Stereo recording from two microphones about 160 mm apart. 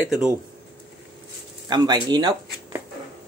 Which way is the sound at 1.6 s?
25° right (ahead or behind).